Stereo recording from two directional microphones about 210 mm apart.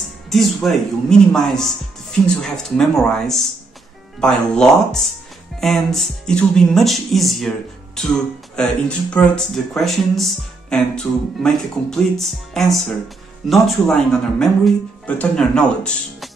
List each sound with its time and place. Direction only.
0.3 s speech: centre (ahead or behind)